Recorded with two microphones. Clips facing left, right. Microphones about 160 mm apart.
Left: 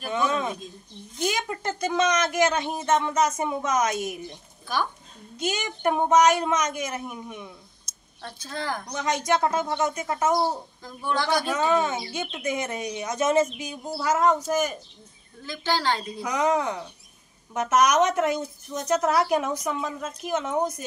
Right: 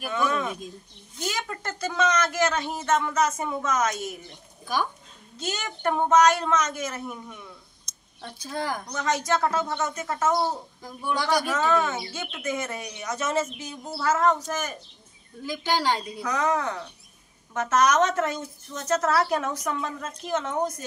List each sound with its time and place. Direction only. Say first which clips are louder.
0.1 s a sound: left 1 dB; 20° left (ahead or behind)
1.2 s speech: left 4 dB; 15° left (ahead or behind)
5.4 s speech: left 3 dB; 10° left (ahead or behind)
8.2 s speech: right 2 dB; 10° right (ahead or behind)
8.9 s speech: left 1 dB; 15° left (ahead or behind)
11.1 s speech: even; 10° right (ahead or behind)
11.4 s speech: left 1 dB; 15° left (ahead or behind)
15.4 s speech: right 1 dB; 15° right (ahead or behind)
16.2 s speech: left 2 dB; 15° left (ahead or behind)